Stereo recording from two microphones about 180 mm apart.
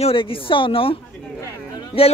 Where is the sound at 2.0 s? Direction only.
30° left (ahead or behind).